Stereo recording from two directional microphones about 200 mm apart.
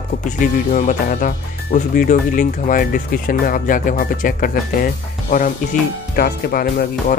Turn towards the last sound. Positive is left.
turn(degrees=50)  # may be behind; listen again after turning